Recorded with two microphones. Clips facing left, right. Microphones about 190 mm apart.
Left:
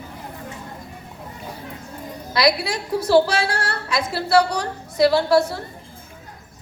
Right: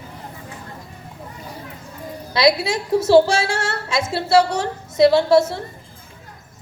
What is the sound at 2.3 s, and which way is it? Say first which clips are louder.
A woman's voice: right 3 dB; 25° right (ahead or behind).